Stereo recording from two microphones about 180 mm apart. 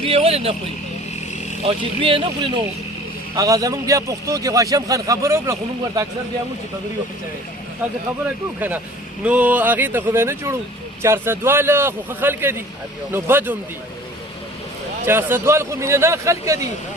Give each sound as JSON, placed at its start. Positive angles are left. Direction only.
{"t": 0.0, "sound": "speech", "side_deg": -30}
{"t": 1.6, "sound": "a man's voice", "side_deg": -30}
{"t": 3.3, "sound": "a man's voice", "side_deg": -20}
{"t": 9.2, "sound": "a man's voice", "side_deg": -10}
{"t": 15.0, "sound": "a man's voice", "side_deg": -15}